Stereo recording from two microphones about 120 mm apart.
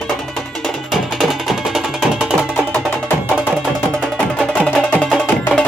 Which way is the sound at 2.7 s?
15° left (ahead or behind).